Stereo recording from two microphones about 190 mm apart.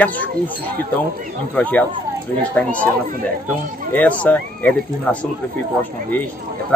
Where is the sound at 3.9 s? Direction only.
10° left (ahead or behind).